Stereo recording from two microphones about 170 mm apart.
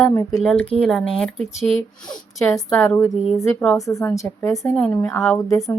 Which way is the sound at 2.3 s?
20° left (ahead or behind).